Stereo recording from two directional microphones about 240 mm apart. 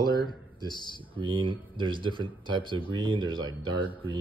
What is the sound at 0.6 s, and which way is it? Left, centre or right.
Speech, centre.